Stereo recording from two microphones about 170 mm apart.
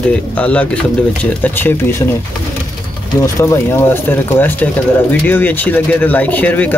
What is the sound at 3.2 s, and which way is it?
Speech, 15° left (ahead or behind).